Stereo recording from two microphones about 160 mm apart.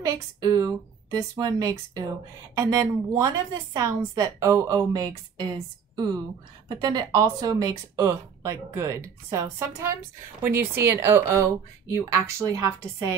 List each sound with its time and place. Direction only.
0.0 s speech: 20° right (ahead or behind)
6.7 s speech: 25° right (ahead or behind)